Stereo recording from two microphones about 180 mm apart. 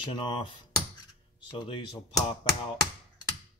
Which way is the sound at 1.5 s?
25° left (ahead or behind).